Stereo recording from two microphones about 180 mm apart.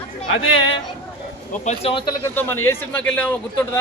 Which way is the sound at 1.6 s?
30° left (ahead or behind).